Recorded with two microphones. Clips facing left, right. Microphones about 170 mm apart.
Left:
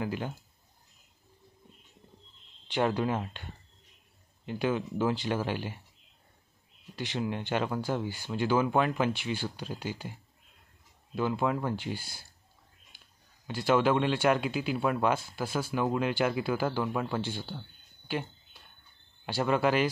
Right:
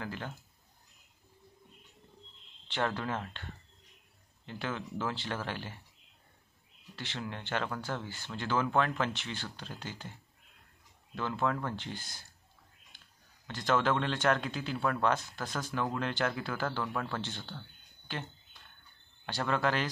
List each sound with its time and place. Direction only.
0.0 s speech: 15° left (ahead or behind)
2.7 s speech: 15° left (ahead or behind)
7.0 s speech: 15° left (ahead or behind)
11.1 s speech: 15° left (ahead or behind)
13.5 s speech: 10° left (ahead or behind)